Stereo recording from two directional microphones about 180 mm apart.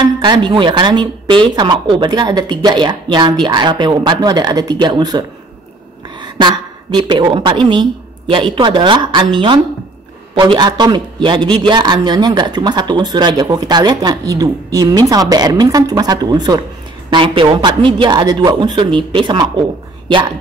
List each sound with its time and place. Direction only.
0.0 s a woman's voice: 25° right (ahead or behind)